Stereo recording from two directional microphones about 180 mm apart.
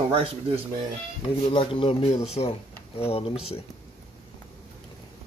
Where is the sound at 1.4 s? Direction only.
30° left (ahead or behind).